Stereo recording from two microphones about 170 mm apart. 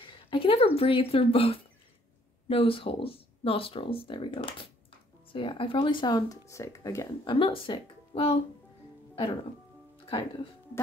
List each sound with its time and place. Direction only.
0.0 s speech: 30° left (ahead or behind)
7.2 s speech: 30° left (ahead or behind)